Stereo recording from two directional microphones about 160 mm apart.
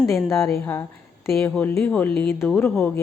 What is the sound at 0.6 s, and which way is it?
A woman's voice, 15° left (ahead or behind).